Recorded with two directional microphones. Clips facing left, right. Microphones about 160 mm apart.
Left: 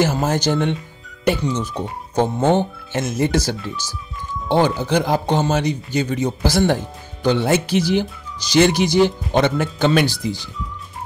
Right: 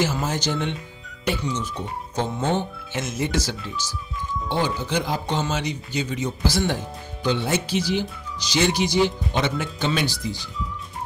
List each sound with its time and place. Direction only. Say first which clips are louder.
0.0 s speech: left 6 dB; 55° left (ahead or behind)
4.5 s speech: left 8 dB; 60° left (ahead or behind)